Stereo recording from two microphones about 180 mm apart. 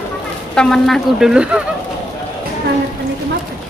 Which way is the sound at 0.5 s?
Centre (ahead or behind).